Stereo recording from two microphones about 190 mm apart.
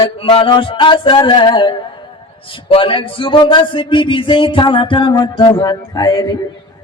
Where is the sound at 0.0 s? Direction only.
30° left (ahead or behind).